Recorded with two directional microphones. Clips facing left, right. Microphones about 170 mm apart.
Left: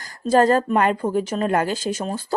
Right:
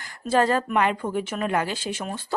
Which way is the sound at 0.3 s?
40° left (ahead or behind).